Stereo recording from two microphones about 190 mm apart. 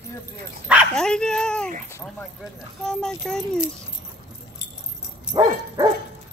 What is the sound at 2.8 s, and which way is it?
Speech, 5° left (ahead or behind).